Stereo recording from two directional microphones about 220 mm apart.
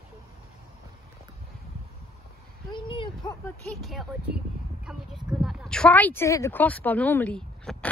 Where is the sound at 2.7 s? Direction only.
20° left (ahead or behind).